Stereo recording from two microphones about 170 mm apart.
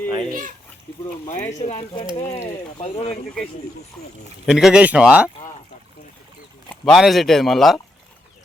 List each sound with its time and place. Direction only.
0.1 s a child's voice: 25° right (ahead or behind)
1.5 s speech: 40° left (ahead or behind)
4.4 s speech: 5° right (ahead or behind)
6.7 s speech: centre (ahead or behind)